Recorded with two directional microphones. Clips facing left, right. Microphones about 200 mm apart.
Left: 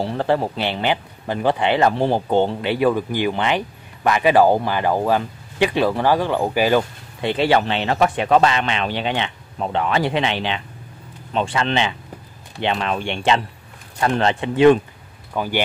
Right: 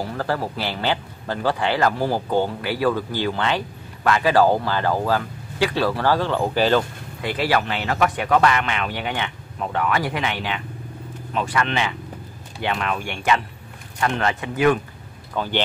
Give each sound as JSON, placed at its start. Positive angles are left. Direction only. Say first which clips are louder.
{"t": 0.0, "sound": "speech", "louder": "left 5 dB", "side_deg": 25}
{"t": 7.2, "sound": "speech", "louder": "left 4 dB", "side_deg": 25}
{"t": 15.3, "sound": "speech", "louder": "left 2 dB", "side_deg": 10}